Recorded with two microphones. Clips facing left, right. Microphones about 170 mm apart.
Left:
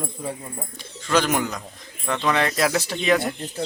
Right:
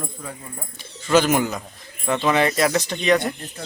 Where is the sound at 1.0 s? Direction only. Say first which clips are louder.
Right 4 dB; 5° right (ahead or behind).